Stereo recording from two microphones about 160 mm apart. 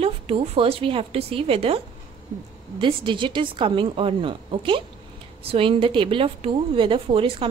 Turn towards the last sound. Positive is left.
turn(degrees=-35)  # may be behind; listen again after turning